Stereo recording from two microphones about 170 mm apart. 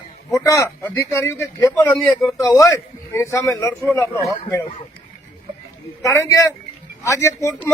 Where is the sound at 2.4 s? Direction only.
20° left (ahead or behind).